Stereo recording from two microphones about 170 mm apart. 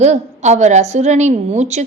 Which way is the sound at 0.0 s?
40° right (ahead or behind).